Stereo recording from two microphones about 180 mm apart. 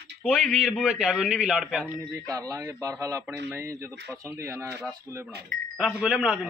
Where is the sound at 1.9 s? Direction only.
15° right (ahead or behind).